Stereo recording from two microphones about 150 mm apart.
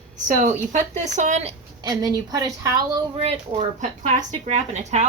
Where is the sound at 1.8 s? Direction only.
25° right (ahead or behind).